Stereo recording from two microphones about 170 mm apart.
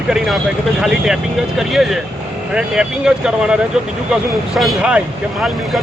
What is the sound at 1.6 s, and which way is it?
Speech, centre (ahead or behind).